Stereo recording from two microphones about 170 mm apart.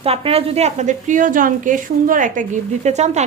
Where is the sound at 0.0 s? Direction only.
35° right (ahead or behind).